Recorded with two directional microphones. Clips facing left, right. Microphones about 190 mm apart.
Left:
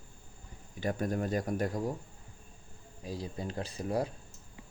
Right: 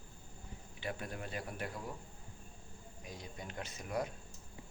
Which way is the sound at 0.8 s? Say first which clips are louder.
Left 10 dB; 40° left (ahead or behind).